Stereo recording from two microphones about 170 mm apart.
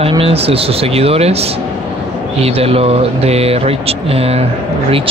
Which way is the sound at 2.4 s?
35° right (ahead or behind).